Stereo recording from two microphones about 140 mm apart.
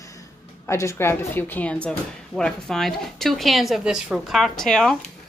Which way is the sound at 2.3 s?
5° left (ahead or behind).